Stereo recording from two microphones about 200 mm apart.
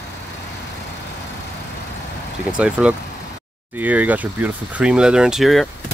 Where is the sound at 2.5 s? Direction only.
5° right (ahead or behind).